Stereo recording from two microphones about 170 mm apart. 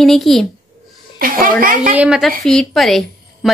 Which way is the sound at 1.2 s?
55° right (ahead or behind).